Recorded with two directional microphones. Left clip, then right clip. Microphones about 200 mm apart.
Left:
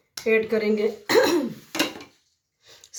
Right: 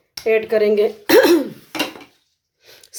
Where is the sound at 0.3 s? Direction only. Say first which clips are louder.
Right 6 dB; 45° right (ahead or behind).